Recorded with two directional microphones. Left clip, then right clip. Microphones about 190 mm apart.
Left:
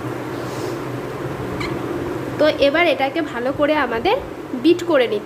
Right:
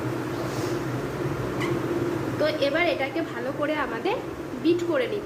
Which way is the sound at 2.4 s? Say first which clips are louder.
Left 9 dB; 45° left (ahead or behind).